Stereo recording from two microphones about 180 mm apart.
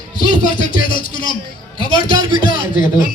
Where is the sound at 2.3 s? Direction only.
50° left (ahead or behind).